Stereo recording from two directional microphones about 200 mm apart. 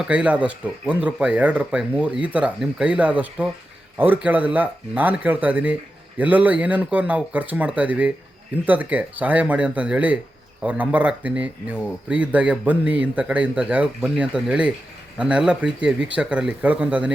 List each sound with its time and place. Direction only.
0.0 s speech: 5° right (ahead or behind)